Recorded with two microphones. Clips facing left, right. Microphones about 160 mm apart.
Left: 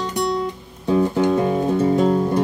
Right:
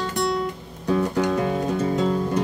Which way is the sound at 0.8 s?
25° left (ahead or behind).